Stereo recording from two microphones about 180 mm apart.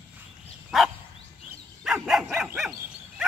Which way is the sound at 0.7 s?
Centre (ahead or behind).